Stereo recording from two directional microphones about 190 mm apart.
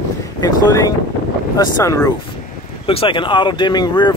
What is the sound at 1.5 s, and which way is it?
Speech, 15° left (ahead or behind).